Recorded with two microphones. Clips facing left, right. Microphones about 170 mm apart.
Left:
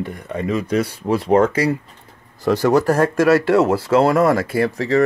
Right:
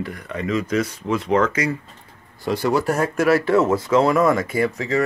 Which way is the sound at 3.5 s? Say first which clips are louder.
Left 2 dB; 75° left (ahead or behind).